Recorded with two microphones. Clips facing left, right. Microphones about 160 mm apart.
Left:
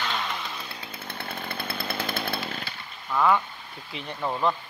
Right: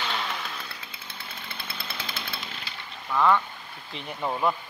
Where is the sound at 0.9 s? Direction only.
55° left (ahead or behind).